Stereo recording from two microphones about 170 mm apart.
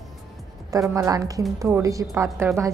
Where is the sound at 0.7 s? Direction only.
20° right (ahead or behind).